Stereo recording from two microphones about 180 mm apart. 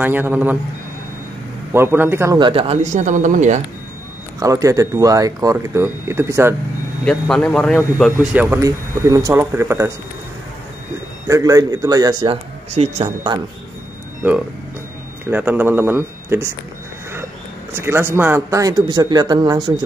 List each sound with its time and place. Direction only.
0.0 s speech: 10° right (ahead or behind)
1.7 s speech: 10° right (ahead or behind)
2.3 s speech: 30° right (ahead or behind)
4.4 s speech: 20° right (ahead or behind)
7.1 s speech: 5° left (ahead or behind); by 9.9 s 15° right (ahead or behind)
11.2 s speech: 15° right (ahead or behind); by 13.1 s 35° right (ahead or behind)
15.2 s speech: 10° right (ahead or behind)
17.7 s speech: 15° right (ahead or behind)